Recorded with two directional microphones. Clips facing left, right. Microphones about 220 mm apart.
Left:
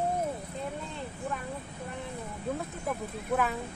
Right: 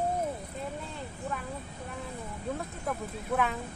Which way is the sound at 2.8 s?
Centre (ahead or behind).